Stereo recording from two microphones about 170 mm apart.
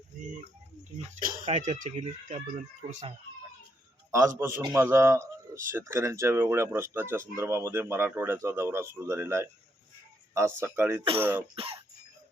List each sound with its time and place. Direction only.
0.1 s a sound: 50° right (ahead or behind)
1.5 s speech: 45° right (ahead or behind)
4.4 s speech: 15° right (ahead or behind)
11.5 s cough: 30° right (ahead or behind)